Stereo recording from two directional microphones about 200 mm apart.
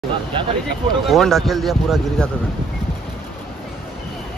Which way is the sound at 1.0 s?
Centre (ahead or behind).